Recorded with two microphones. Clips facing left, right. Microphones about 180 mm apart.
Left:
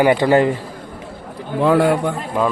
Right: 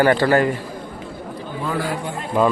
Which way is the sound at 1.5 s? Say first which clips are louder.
Left 11 dB; 70° left (ahead or behind).